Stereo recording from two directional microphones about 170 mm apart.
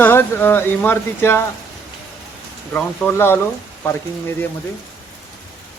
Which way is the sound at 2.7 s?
10° left (ahead or behind).